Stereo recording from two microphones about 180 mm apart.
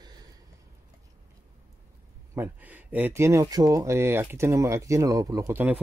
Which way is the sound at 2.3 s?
10° right (ahead or behind).